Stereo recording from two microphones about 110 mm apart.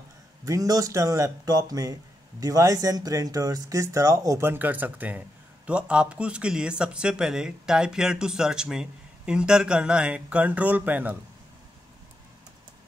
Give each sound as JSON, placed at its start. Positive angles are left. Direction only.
{"t": 0.5, "sound": "speech", "side_deg": -35}